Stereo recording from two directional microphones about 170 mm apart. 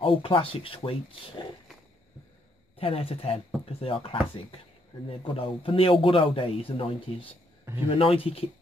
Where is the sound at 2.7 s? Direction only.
35° left (ahead or behind).